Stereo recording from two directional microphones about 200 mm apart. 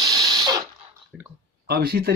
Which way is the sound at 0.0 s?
20° right (ahead or behind).